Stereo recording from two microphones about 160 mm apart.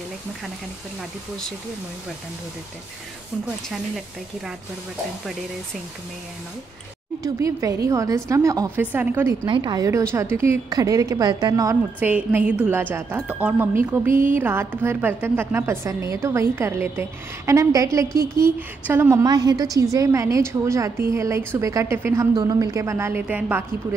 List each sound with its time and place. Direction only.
7.3 s a woman's voice: 20° right (ahead or behind)
9.5 s a woman's voice: 30° right (ahead or behind)
12.0 s a woman's voice: 10° right (ahead or behind)